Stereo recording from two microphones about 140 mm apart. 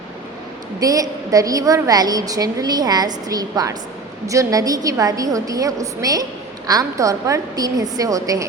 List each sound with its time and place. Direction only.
0.8 s a woman's voice: 25° right (ahead or behind)